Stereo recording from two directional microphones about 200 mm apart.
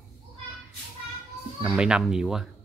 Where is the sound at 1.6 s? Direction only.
5° right (ahead or behind).